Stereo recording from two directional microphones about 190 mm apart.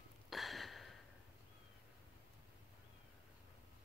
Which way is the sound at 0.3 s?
Centre (ahead or behind).